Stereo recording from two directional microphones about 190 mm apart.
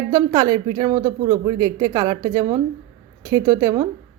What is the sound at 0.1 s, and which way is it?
Speech, 20° right (ahead or behind).